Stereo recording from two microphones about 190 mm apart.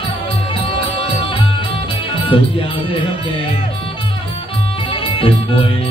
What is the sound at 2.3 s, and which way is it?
Speech, 25° left (ahead or behind).